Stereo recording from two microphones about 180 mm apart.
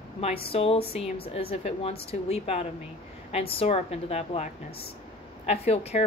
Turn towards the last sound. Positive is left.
turn(degrees=35)  # may be behind; listen again after turning